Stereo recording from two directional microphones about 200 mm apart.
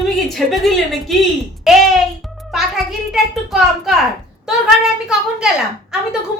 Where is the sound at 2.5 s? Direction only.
Centre (ahead or behind).